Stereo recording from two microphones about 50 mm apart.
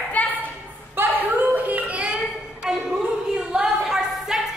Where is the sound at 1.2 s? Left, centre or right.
Right.